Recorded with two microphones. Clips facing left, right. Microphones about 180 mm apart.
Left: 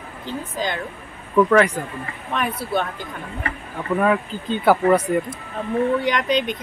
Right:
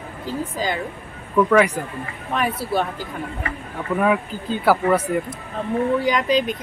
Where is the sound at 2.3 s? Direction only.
Centre (ahead or behind).